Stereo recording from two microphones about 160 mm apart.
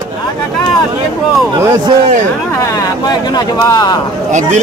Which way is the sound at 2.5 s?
25° left (ahead or behind).